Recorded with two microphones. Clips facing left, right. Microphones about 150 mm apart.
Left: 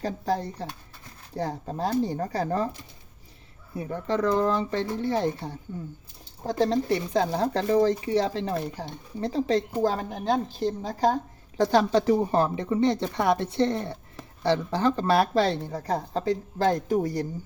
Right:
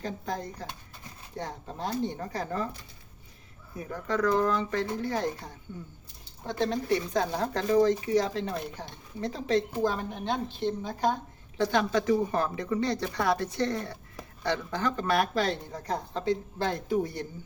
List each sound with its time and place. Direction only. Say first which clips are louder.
0.0 s a woman's voice: left 6 dB; 35° left (ahead or behind)
3.8 s a woman's voice: left 3 dB; 25° left (ahead or behind)